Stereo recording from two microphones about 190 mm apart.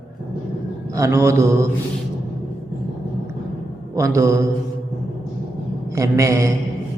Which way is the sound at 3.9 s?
15° right (ahead or behind).